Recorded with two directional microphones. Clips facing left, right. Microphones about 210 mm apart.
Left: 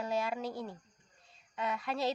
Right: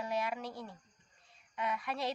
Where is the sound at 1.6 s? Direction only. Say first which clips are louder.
Left 3 dB; 25° left (ahead or behind).